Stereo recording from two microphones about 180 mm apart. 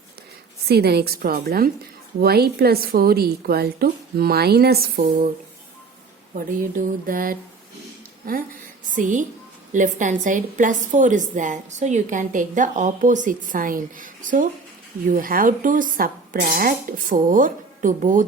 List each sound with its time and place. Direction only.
0.7 s a woman's voice: 60° right (ahead or behind)
6.3 s a woman's voice: 50° right (ahead or behind)
9.0 s a woman's voice: 45° right (ahead or behind)